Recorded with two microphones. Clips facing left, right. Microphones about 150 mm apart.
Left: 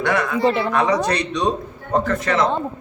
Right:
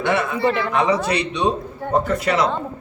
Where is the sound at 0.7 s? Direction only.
10° right (ahead or behind).